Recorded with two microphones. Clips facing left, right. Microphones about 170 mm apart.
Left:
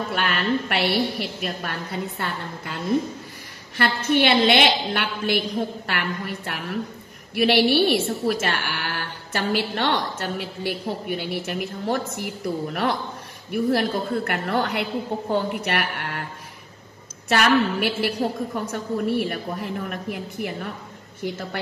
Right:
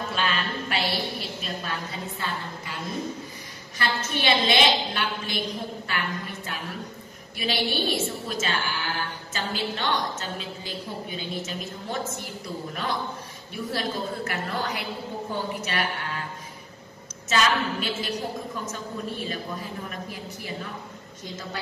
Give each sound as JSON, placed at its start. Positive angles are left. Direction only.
{"t": 0.1, "sound": "a woman's voice", "side_deg": 65}
{"t": 17.3, "sound": "a woman's voice", "side_deg": 65}